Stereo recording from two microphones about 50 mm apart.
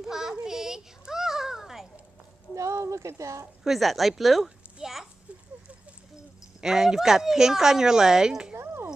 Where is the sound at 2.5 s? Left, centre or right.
Right.